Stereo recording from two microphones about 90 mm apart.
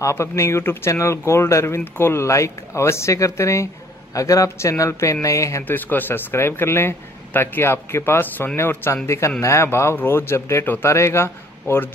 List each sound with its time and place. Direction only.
0.0 s speech: 30° left (ahead or behind)
5.7 s speech: 20° left (ahead or behind)